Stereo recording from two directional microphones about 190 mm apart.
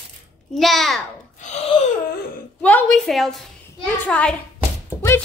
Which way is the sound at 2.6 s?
10° left (ahead or behind).